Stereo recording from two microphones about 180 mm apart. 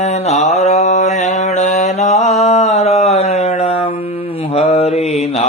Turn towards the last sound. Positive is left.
turn(degrees=35)  # may be behind; listen again after turning